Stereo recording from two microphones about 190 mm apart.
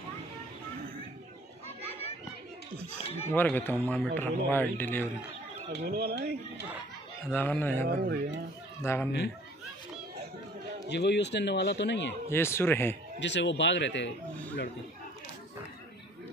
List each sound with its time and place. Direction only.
3.3 s speech: 10° left (ahead or behind)
5.7 s speech: 60° right (ahead or behind)
7.2 s speech: 10° left (ahead or behind)
7.8 s speech: 55° right (ahead or behind)
8.8 s speech: 15° left (ahead or behind)
10.9 s speech: 65° left (ahead or behind)
12.3 s speech: 15° left (ahead or behind)
13.2 s speech: 70° left (ahead or behind)